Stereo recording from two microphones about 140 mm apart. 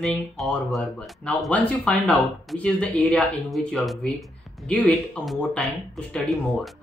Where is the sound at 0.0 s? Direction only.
Centre (ahead or behind).